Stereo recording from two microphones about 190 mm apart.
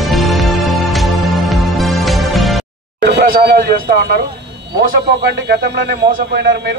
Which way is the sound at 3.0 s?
45° right (ahead or behind).